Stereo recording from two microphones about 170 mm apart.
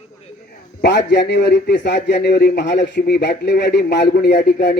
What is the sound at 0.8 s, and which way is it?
A man's voice, 80° left.